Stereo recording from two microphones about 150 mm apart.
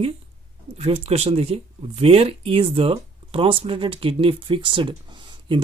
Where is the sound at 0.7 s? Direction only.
40° right (ahead or behind).